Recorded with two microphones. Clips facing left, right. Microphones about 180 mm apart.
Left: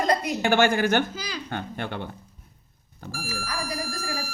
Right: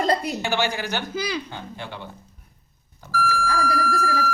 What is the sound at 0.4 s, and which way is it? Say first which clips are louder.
A woman's voice: left 5 dB; 50° left (ahead or behind).